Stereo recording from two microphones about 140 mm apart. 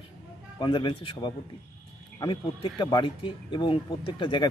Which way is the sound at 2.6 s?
35° left (ahead or behind).